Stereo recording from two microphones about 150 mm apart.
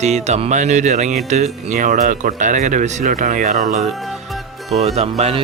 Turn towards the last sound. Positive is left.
turn(degrees=-40)  # may be behind; listen again after turning